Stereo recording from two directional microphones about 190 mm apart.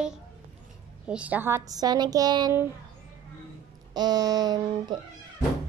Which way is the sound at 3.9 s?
20° right (ahead or behind).